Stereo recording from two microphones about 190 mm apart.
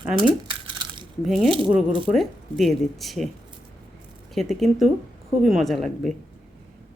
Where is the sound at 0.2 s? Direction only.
25° right (ahead or behind).